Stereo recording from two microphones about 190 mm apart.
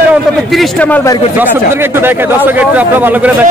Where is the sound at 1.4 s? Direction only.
10° right (ahead or behind).